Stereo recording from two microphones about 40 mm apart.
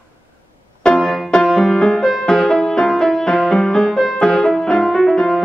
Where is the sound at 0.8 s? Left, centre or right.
Centre.